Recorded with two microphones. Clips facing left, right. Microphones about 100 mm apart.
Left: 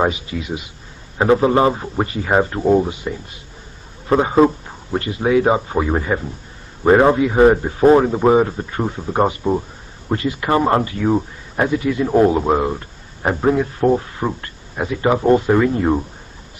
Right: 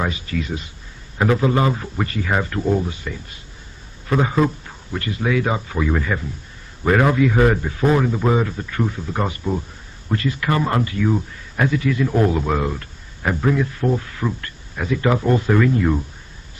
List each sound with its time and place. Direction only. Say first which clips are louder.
0.1 s speech: even; 15° left (ahead or behind)
1.1 s a man's voice: left 4 dB; 30° left (ahead or behind)
4.1 s a man's voice: left 5 dB; 30° left (ahead or behind)
4.6 s a sound: left 5 dB; 20° left (ahead or behind)
5.2 s a man's voice: left 6 dB; 30° left (ahead or behind)
10.0 s speech: left 2 dB; 20° left (ahead or behind)
10.6 s a man's voice: left 4 dB; 30° left (ahead or behind)
11.6 s a man's voice: left 2 dB; 25° left (ahead or behind)